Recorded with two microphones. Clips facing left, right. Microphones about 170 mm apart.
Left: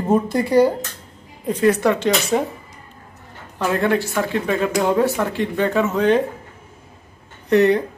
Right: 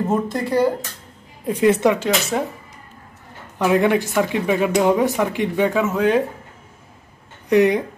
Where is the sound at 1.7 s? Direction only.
20° right (ahead or behind).